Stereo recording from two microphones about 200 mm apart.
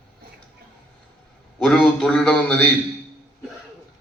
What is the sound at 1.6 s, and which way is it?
Speech, centre (ahead or behind).